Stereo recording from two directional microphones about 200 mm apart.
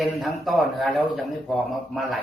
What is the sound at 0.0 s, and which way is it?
A man's voice, centre (ahead or behind).